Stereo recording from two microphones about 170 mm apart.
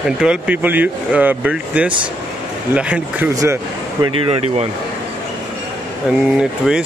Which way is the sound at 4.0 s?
35° right (ahead or behind).